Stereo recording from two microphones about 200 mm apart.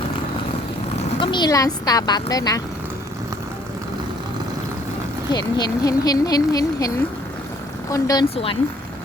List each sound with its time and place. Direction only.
1.2 s speech: 20° left (ahead or behind)
5.3 s speech: 20° left (ahead or behind)